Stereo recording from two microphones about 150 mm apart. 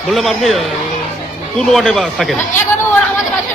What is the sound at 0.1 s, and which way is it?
Speech, centre (ahead or behind).